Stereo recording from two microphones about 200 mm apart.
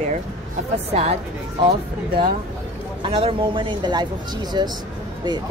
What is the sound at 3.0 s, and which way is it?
Speech, 25° right (ahead or behind).